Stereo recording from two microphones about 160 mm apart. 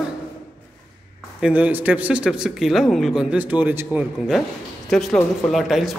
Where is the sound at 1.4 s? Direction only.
10° right (ahead or behind).